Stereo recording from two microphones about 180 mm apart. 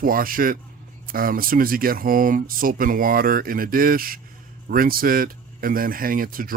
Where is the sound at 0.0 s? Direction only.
55° right (ahead or behind).